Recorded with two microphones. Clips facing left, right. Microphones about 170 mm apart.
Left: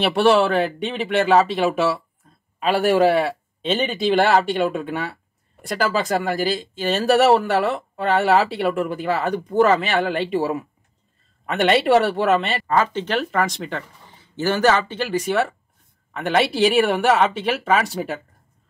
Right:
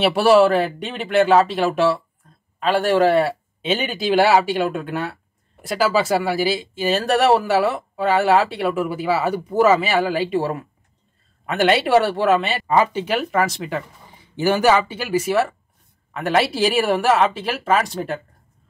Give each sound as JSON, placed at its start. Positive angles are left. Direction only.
{"t": 0.0, "sound": "speech", "side_deg": -5}
{"t": 12.6, "sound": "speech", "side_deg": -10}